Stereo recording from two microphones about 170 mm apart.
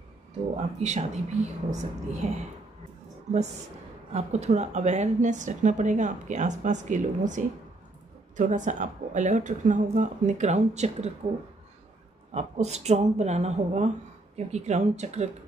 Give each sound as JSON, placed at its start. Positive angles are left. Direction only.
{"t": 0.6, "sound": "a woman's voice", "side_deg": -40}
{"t": 4.1, "sound": "a woman's voice", "side_deg": -40}
{"t": 12.4, "sound": "a woman's voice", "side_deg": -40}